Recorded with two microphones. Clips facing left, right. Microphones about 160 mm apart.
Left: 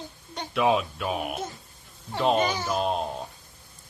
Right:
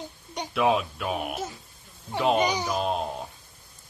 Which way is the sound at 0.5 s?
Centre (ahead or behind).